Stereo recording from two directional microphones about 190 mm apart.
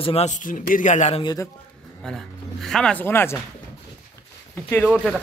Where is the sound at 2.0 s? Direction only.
5° left (ahead or behind).